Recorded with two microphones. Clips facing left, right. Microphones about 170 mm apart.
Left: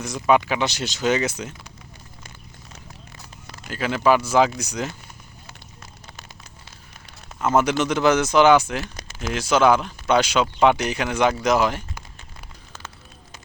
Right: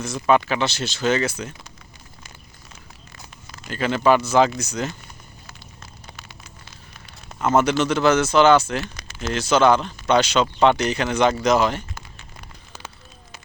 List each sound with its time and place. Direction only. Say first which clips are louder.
0.0 s speech: even; 15° left (ahead or behind)
3.7 s speech: right 1 dB; 5° left (ahead or behind)
7.4 s speech: right 1 dB; 10° left (ahead or behind)